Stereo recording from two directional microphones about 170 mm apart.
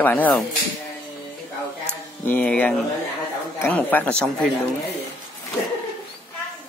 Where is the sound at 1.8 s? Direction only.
10° left (ahead or behind).